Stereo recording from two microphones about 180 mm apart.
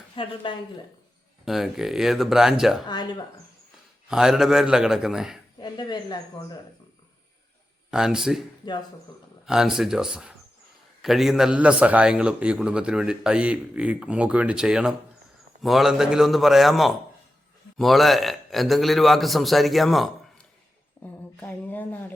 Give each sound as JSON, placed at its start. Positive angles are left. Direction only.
{"t": 0.2, "sound": "speech", "side_deg": 25}
{"t": 1.5, "sound": "a man's voice", "side_deg": 0}
{"t": 2.8, "sound": "speech", "side_deg": 25}
{"t": 4.1, "sound": "a man's voice", "side_deg": -5}
{"t": 5.5, "sound": "speech", "side_deg": 25}
{"t": 7.9, "sound": "a man's voice", "side_deg": -5}
{"t": 9.5, "sound": "a man's voice", "side_deg": -5}
{"t": 21.0, "sound": "a sound", "side_deg": 15}